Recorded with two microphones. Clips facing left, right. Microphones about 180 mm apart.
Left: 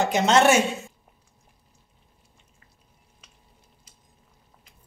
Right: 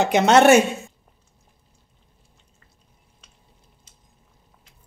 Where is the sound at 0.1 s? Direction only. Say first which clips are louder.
Right 6 dB; 60° right (ahead or behind).